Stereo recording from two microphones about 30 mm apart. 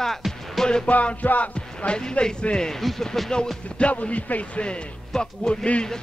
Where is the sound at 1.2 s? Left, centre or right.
Left.